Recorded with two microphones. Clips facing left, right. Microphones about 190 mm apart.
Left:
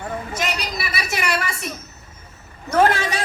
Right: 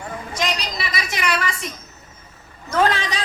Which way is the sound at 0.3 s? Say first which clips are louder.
Right 4 dB; 5° left (ahead or behind).